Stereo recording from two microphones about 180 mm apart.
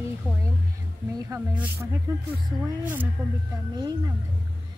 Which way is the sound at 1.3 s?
10° right (ahead or behind).